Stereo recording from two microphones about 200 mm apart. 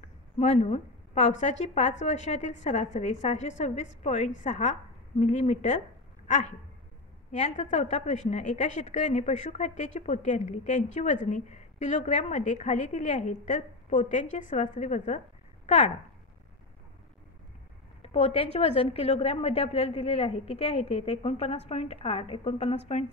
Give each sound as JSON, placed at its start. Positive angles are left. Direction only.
{"t": 0.4, "sound": "a woman's voice", "side_deg": 35}
{"t": 18.0, "sound": "a woman's voice", "side_deg": 30}